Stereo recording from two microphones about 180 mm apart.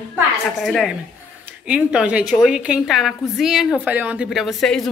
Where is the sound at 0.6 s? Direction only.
Centre (ahead or behind).